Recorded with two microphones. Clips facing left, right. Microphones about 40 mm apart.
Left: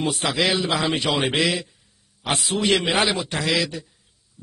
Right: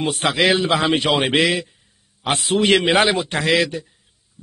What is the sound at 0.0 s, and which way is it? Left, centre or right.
A man's voice, right.